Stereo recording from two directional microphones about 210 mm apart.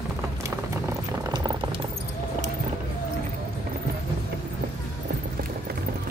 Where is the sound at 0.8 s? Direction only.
15° right (ahead or behind).